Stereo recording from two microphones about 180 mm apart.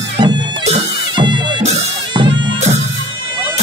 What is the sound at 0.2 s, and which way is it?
Bagpipes, 25° right (ahead or behind).